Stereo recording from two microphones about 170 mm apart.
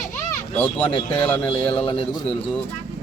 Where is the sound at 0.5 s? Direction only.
10° left (ahead or behind).